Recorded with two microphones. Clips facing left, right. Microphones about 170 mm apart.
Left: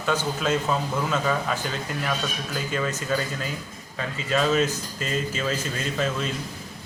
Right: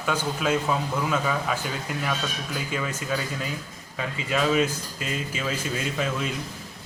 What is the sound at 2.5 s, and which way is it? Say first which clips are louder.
A man's voice: left 3 dB; 10° right (ahead or behind).